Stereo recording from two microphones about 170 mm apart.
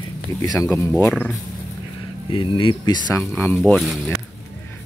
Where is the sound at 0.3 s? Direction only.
15° left (ahead or behind).